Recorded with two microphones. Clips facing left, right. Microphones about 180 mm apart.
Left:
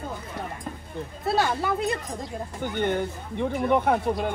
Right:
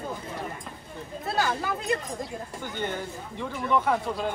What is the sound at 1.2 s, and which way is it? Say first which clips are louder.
Speech: left 3 dB; 30° left (ahead or behind).